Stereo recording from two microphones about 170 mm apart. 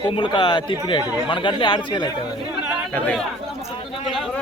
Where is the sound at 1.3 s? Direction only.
30° left (ahead or behind).